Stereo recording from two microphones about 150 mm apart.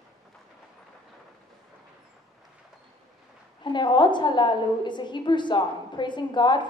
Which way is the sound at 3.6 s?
30° left (ahead or behind).